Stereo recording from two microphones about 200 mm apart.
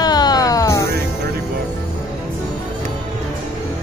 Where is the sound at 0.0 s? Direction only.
20° left (ahead or behind).